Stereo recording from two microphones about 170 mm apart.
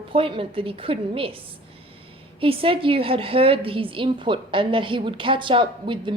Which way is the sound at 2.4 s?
30° right (ahead or behind).